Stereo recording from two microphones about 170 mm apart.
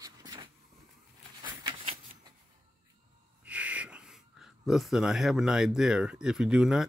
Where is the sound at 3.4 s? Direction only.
10° right (ahead or behind).